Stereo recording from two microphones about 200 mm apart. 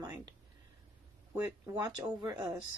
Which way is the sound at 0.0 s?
20° right (ahead or behind).